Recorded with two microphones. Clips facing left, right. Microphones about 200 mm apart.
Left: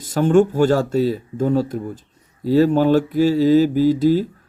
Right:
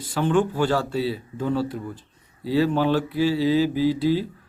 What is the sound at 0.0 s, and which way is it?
Speech, 45° left (ahead or behind).